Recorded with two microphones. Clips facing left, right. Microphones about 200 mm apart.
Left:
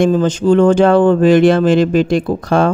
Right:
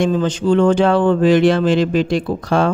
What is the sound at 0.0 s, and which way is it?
A man's voice, 45° left (ahead or behind).